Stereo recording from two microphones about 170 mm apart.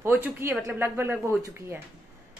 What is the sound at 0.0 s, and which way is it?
A woman's voice, 15° right (ahead or behind).